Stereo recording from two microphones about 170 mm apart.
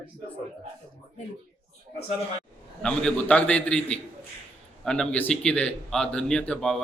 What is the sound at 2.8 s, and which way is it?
A man's voice, 5° left (ahead or behind).